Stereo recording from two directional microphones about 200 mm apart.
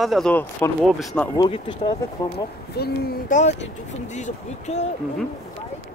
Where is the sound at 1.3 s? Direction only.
20° left (ahead or behind).